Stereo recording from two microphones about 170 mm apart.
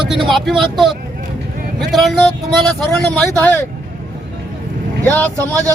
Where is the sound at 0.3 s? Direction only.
Centre (ahead or behind).